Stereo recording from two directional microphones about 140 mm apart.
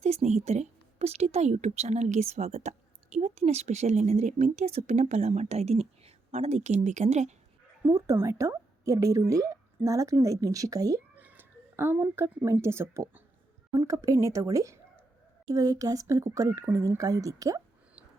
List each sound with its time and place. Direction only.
0.0 s a woman's voice: 50° right (ahead or behind)
7.9 s a woman's voice: 20° right (ahead or behind)
11.2 s a woman's voice: 15° right (ahead or behind)